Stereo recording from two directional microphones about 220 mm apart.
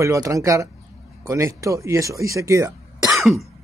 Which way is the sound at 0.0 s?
15° right (ahead or behind).